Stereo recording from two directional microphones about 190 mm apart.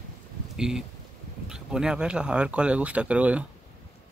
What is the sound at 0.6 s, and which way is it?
Speech, 5° right (ahead or behind).